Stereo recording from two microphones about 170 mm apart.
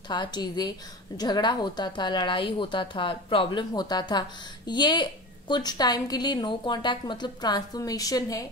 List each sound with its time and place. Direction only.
0.1 s a woman's voice: 25° left (ahead or behind)